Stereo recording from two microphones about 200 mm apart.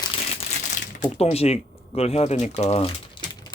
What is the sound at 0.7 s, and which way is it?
Speech, 35° left (ahead or behind).